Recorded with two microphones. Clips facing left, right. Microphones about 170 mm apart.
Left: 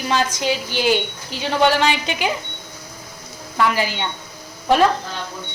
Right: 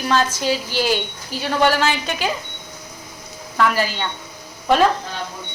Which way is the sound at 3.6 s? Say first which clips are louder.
Right 1 dB; 15° left (ahead or behind).